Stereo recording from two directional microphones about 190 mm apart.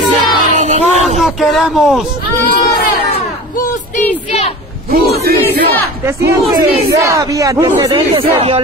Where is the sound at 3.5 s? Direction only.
40° left (ahead or behind).